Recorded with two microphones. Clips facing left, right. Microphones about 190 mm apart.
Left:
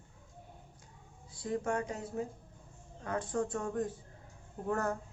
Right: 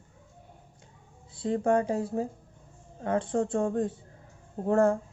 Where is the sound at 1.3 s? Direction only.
25° right (ahead or behind).